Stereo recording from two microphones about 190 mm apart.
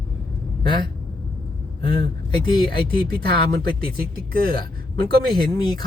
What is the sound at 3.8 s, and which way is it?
Speech, 55° right (ahead or behind).